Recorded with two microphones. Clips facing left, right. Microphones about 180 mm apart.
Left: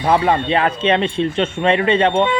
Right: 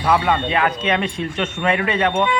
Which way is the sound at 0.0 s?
30° left (ahead or behind).